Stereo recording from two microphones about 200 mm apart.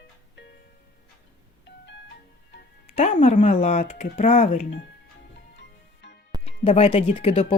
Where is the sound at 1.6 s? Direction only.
60° left (ahead or behind).